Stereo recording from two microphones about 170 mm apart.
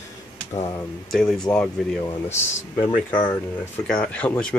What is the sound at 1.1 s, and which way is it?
Speech, centre (ahead or behind).